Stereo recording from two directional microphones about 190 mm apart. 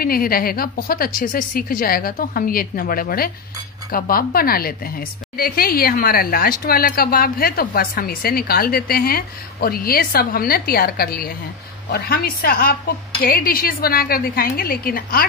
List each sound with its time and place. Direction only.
0.0 s speech: 50° left (ahead or behind)